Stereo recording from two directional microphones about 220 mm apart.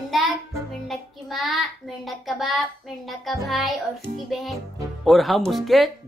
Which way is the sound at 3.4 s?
Centre (ahead or behind).